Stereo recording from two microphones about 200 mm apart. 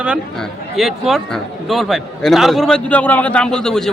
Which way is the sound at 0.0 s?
5° right (ahead or behind).